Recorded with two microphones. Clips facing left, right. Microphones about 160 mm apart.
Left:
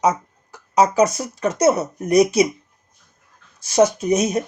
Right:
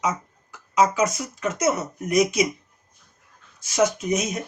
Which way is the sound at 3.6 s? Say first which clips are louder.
Left 5 dB; 35° left (ahead or behind).